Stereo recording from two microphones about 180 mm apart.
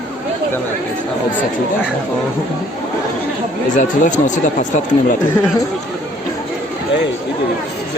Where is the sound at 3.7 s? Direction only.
45° left (ahead or behind).